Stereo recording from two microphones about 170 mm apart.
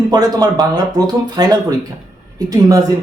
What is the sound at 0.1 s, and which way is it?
Speech, 20° right (ahead or behind).